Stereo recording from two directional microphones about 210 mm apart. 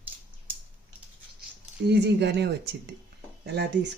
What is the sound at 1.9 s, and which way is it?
Speech, 55° right (ahead or behind).